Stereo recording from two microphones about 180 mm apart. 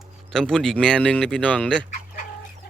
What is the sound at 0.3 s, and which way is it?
Speech, 5° left (ahead or behind).